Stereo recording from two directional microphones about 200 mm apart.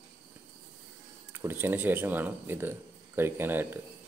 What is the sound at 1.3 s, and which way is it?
Speech, 10° right (ahead or behind).